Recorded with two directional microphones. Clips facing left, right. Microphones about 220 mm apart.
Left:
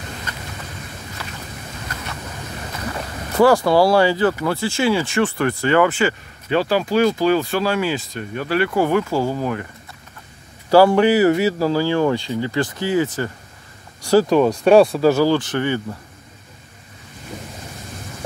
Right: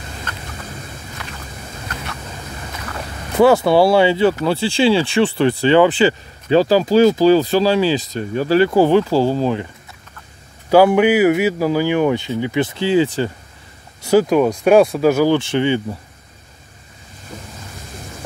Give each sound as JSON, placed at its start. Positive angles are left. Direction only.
{"t": 3.6, "sound": "speech", "side_deg": -25}
{"t": 10.7, "sound": "speech", "side_deg": -15}
{"t": 14.2, "sound": "speech", "side_deg": -10}
{"t": 15.0, "sound": "speech", "side_deg": -15}
{"t": 15.3, "sound": "speech", "side_deg": -25}